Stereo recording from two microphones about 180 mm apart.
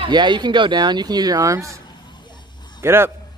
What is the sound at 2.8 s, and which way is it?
Speech, 15° right (ahead or behind).